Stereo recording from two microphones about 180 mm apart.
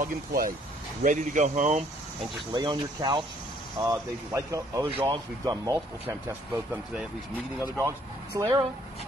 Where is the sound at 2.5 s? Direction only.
25° right (ahead or behind).